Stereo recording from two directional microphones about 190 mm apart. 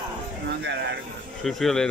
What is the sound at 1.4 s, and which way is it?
Speech, centre (ahead or behind).